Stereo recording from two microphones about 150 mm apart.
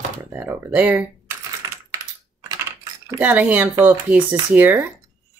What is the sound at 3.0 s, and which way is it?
Speech, 15° right (ahead or behind).